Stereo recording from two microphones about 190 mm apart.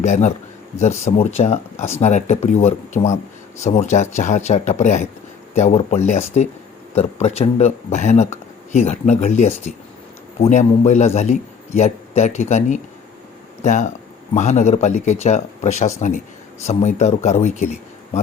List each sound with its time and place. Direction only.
0.0 s speech: 40° left (ahead or behind)